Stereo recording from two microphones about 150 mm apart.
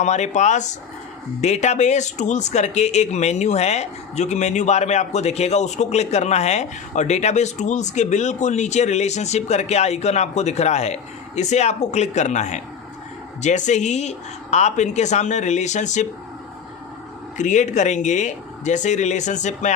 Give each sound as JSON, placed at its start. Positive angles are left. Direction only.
{"t": 0.0, "sound": "speech", "side_deg": 50}
{"t": 17.3, "sound": "speech", "side_deg": 55}